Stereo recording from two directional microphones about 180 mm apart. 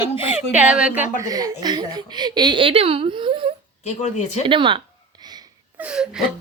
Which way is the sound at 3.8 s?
40° left (ahead or behind).